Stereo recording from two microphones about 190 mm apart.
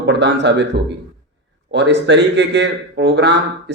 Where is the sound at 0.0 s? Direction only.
65° right (ahead or behind).